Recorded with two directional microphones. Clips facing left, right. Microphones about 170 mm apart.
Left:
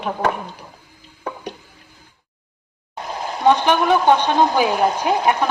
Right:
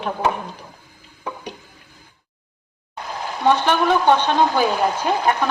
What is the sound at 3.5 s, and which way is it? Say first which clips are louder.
A woman's voice: left 2 dB; 15° left (ahead or behind).